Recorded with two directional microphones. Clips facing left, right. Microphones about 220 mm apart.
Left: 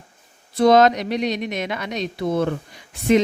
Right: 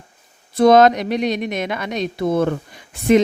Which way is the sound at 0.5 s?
50° right (ahead or behind).